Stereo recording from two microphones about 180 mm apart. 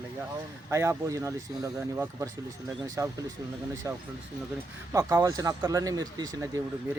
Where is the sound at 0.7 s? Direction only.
15° right (ahead or behind).